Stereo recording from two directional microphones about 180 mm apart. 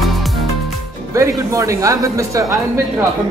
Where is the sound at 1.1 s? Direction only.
15° right (ahead or behind).